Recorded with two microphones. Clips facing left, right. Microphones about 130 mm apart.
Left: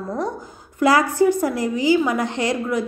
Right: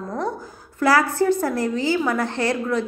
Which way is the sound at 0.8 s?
15° left (ahead or behind).